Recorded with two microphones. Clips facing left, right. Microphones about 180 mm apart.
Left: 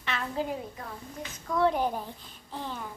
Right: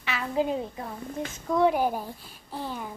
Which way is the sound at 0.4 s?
20° right (ahead or behind).